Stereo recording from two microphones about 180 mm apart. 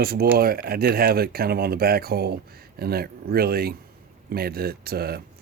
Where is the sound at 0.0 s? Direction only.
55° right (ahead or behind).